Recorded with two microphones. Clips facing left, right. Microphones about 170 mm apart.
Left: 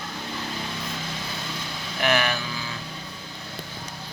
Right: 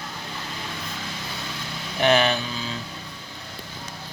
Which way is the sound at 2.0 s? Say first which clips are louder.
Right 4 dB; 25° right (ahead or behind).